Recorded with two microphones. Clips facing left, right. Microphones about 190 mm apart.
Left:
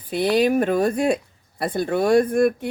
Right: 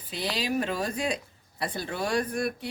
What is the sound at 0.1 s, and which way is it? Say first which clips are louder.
Speech: left 12 dB; 55° left (ahead or behind).